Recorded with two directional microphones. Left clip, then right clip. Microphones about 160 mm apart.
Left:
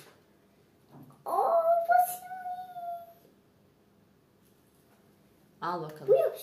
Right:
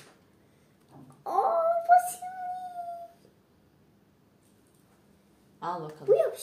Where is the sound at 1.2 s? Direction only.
30° right (ahead or behind).